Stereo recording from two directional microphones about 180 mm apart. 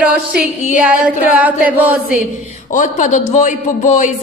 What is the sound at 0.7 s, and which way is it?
A woman's voice, 5° right (ahead or behind).